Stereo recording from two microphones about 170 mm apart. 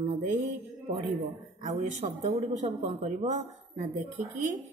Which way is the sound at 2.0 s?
40° right (ahead or behind).